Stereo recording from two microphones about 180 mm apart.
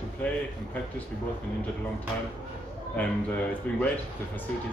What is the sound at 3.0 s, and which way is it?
Speech, 10° left (ahead or behind).